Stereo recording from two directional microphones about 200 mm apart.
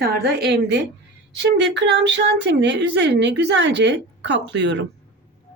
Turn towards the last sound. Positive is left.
turn(degrees=-60)  # may be behind; listen again after turning